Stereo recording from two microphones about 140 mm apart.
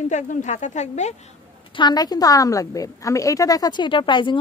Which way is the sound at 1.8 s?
30° left (ahead or behind).